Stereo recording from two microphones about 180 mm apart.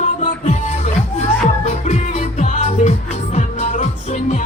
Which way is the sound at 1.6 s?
40° left (ahead or behind).